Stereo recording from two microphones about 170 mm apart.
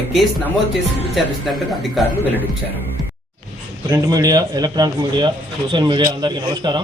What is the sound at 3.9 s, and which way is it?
Speech, 20° right (ahead or behind).